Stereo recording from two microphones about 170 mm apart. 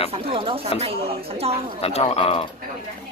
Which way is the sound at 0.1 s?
35° right (ahead or behind).